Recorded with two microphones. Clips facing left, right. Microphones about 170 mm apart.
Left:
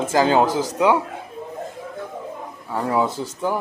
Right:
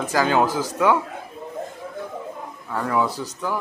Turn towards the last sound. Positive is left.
turn(degrees=25)  # may be behind; listen again after turning